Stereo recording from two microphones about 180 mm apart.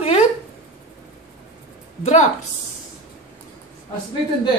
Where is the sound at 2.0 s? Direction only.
40° left (ahead or behind).